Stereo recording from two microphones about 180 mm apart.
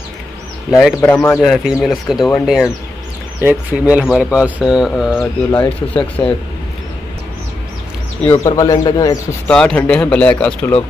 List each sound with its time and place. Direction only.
0.7 s speech: centre (ahead or behind)
1.1 s speech: 15° left (ahead or behind)
1.4 s speech: centre (ahead or behind)
5.1 s speech: 10° left (ahead or behind)
8.3 s speech: 20° left (ahead or behind)
9.5 s speech: 5° left (ahead or behind)